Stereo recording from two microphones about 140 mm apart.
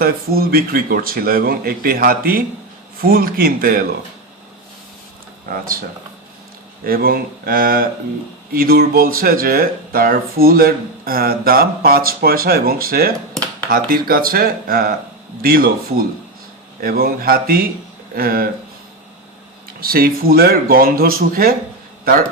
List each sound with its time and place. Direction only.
0.0 s speech: 90° right
5.5 s speech: 90° right
6.8 s speech: 90° right
19.8 s speech: 90° right